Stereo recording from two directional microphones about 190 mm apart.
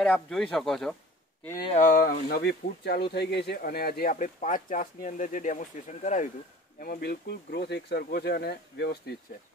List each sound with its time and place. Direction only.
0.0 s speech: 5° left (ahead or behind)
1.7 s speech: 45° left (ahead or behind)
6.8 s speech: 50° left (ahead or behind)